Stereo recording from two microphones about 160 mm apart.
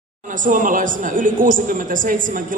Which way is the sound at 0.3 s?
55° right (ahead or behind).